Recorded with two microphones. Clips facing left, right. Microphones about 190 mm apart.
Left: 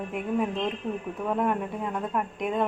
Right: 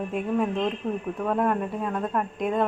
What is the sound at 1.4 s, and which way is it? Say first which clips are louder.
A woman's voice: right 2 dB; 10° left (ahead or behind).